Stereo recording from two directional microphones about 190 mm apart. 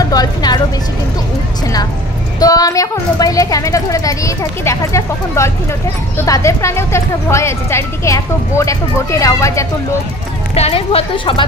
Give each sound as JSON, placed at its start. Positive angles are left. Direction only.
{"t": 0.0, "sound": "music", "side_deg": 20}
{"t": 2.4, "sound": "speech", "side_deg": 20}
{"t": 10.5, "sound": "speech", "side_deg": 30}